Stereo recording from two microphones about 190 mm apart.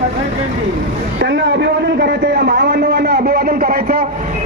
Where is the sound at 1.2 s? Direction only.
65° right (ahead or behind).